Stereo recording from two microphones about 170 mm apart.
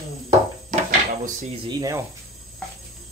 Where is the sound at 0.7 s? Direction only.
50° right (ahead or behind).